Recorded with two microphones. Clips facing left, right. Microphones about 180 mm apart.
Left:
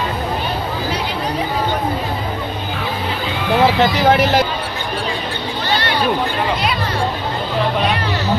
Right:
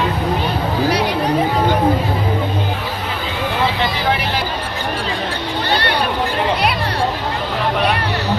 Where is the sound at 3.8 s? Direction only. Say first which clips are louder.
Left 6 dB; 45° left (ahead or behind).